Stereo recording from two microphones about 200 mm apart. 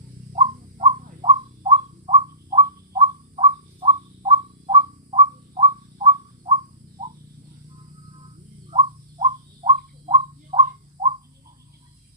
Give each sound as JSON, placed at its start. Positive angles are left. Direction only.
{"t": 0.3, "sound": "bird", "side_deg": -30}
{"t": 8.7, "sound": "bird", "side_deg": -30}